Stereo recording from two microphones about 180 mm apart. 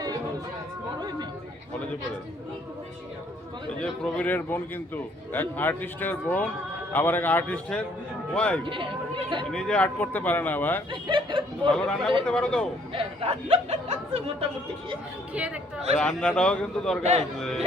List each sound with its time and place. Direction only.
3.8 s speech: 5° left (ahead or behind)
8.6 s speech: 30° right (ahead or behind)
9.5 s speech: 5° left (ahead or behind)
10.9 s speech: 25° right (ahead or behind)
11.7 s a man's voice: 5° left (ahead or behind)
12.9 s speech: 30° right (ahead or behind)
15.3 s speech: 5° right (ahead or behind)
16.0 s a man's voice: 5° left (ahead or behind)
17.0 s speech: 35° right (ahead or behind)